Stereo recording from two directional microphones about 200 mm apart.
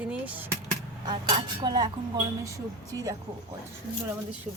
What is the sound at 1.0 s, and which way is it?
Speech, 20° right (ahead or behind).